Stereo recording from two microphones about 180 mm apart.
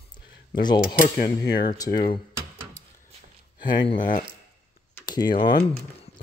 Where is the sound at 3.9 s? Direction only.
45° left (ahead or behind).